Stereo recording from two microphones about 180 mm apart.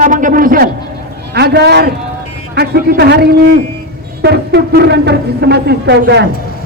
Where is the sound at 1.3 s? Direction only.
65° right (ahead or behind).